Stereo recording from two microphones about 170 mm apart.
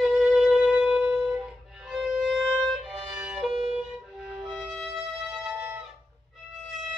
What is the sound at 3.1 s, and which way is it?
Music, 5° right (ahead or behind).